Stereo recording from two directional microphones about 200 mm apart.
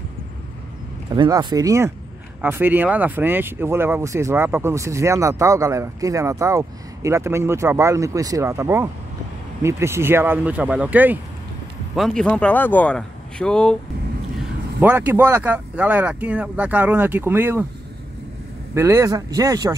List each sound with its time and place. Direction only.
1.1 s speech: 20° right (ahead or behind); by 13.7 s 5° left (ahead or behind)
14.8 s speech: 10° right (ahead or behind)
18.8 s speech: 15° right (ahead or behind)